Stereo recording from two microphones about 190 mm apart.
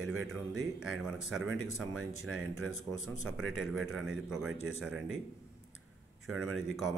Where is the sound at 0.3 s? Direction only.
Centre (ahead or behind).